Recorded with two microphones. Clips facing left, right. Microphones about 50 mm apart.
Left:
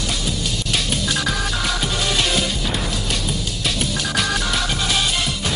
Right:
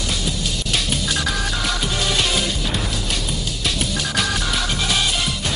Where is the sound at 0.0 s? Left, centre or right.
Centre.